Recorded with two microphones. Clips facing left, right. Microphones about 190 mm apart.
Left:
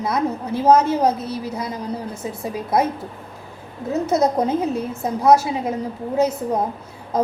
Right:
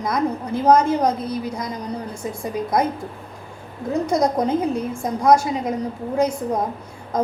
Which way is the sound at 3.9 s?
5° left (ahead or behind).